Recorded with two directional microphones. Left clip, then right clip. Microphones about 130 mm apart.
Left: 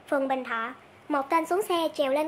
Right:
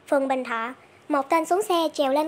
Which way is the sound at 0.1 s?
30° right (ahead or behind).